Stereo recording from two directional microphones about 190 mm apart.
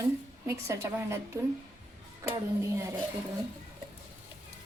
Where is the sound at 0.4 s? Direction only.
15° right (ahead or behind).